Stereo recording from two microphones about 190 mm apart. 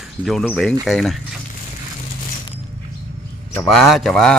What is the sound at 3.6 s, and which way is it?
Speech, centre (ahead or behind).